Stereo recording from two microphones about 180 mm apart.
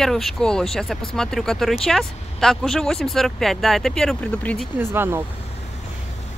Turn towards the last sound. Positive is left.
turn(degrees=-10)  # may be behind; listen again after turning